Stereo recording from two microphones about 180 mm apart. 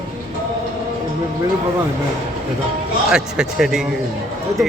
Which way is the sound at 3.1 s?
5° right (ahead or behind).